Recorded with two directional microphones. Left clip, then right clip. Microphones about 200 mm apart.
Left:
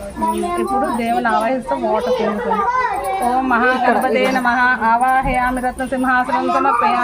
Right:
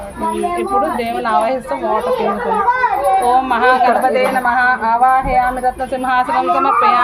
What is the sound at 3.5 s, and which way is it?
A woman's voice, 25° right (ahead or behind).